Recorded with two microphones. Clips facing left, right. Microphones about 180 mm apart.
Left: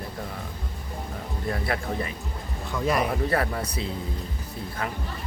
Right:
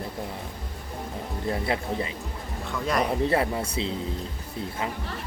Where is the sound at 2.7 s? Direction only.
5° left (ahead or behind).